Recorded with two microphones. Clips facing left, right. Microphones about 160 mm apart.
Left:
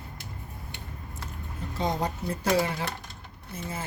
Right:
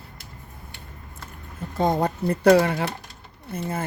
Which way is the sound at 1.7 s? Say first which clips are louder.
Right 7 dB; 55° right (ahead or behind).